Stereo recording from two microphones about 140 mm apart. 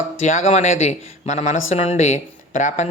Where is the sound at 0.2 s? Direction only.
55° left (ahead or behind).